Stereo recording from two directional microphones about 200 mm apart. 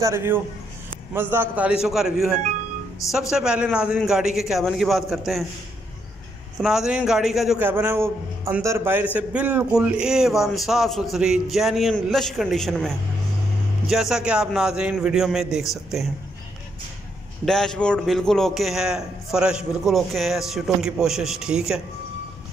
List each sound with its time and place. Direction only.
0.0 s a man's voice: 10° right (ahead or behind)
6.6 s a man's voice: 5° right (ahead or behind)
17.5 s a man's voice: 5° left (ahead or behind)